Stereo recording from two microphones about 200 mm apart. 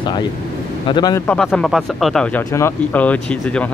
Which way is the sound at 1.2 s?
5° left (ahead or behind).